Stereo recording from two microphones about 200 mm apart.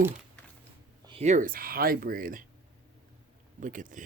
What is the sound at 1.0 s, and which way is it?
Speech, 30° right (ahead or behind).